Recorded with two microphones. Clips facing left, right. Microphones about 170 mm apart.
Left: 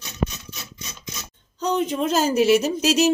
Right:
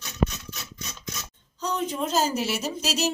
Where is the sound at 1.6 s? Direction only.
65° left (ahead or behind).